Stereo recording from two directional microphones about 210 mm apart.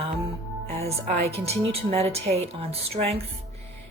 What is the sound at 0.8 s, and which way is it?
A woman's voice, 30° right (ahead or behind).